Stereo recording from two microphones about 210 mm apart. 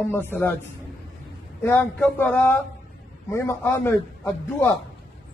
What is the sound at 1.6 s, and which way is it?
Speech, 10° left (ahead or behind).